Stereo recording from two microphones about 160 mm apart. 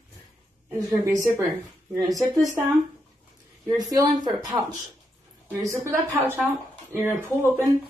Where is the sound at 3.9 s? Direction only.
25° right (ahead or behind).